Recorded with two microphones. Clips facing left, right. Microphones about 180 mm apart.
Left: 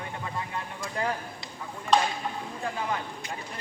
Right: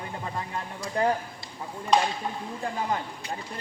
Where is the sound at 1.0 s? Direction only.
35° right (ahead or behind).